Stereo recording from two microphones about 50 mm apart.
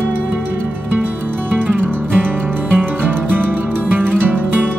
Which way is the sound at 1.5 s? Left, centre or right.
Right.